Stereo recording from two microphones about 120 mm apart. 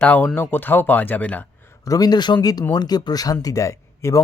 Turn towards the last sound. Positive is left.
turn(degrees=25)  # may be behind; listen again after turning